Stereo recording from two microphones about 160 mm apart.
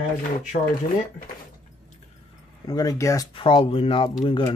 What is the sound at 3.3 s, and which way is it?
Speech, 35° left (ahead or behind).